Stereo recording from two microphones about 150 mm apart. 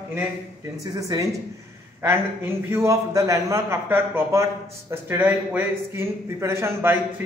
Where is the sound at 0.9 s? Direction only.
25° right (ahead or behind).